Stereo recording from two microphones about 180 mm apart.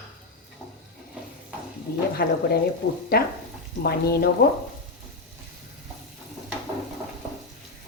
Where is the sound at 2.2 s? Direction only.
55° left (ahead or behind).